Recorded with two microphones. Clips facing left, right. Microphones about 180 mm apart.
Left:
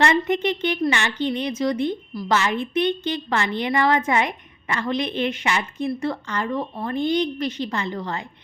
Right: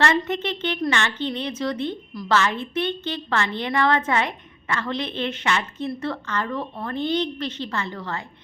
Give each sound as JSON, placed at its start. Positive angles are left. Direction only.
{"t": 0.0, "sound": "a woman's voice", "side_deg": 15}